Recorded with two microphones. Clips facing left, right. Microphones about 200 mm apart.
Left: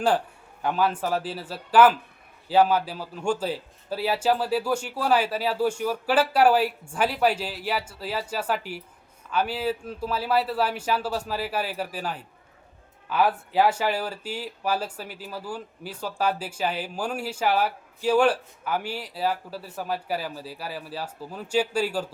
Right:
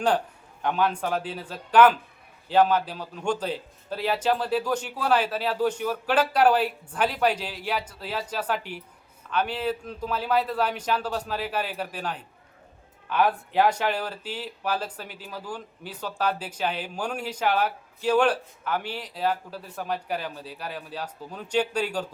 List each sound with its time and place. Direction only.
0.6 s a man's voice: 5° left (ahead or behind)